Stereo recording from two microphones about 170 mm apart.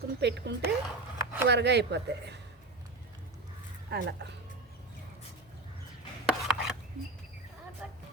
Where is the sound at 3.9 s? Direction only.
80° right.